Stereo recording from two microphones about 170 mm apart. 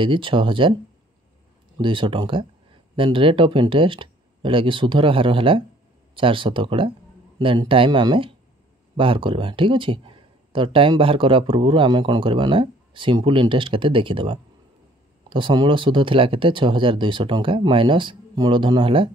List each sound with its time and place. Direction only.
0.0 s speech: 30° right (ahead or behind)
1.8 s speech: 30° right (ahead or behind)